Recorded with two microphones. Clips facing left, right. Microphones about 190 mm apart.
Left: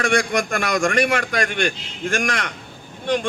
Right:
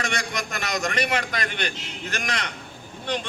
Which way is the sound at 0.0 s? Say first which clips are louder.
Left 9 dB; 50° left (ahead or behind).